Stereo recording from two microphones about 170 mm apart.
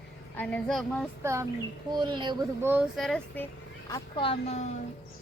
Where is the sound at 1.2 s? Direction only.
15° right (ahead or behind).